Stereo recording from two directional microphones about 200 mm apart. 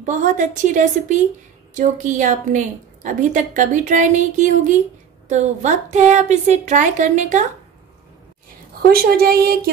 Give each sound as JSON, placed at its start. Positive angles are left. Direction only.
{"t": 0.0, "sound": "a woman's voice", "side_deg": -40}
{"t": 8.8, "sound": "a woman's voice", "side_deg": -50}